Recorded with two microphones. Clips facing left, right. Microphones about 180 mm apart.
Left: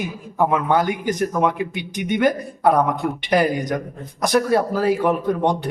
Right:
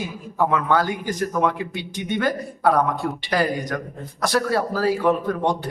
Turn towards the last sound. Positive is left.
turn(degrees=20)  # may be behind; listen again after turning